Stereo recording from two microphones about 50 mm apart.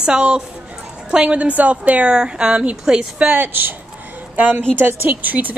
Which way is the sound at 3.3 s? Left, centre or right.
Right.